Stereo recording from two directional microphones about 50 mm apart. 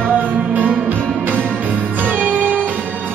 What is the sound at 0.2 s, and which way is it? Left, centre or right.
Music, right.